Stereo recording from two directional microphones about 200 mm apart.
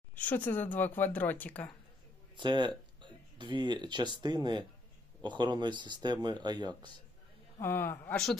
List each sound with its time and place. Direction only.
0.1 s speech: 10° left (ahead or behind)
2.3 s speech: 25° right (ahead or behind)
7.6 s speech: 10° left (ahead or behind)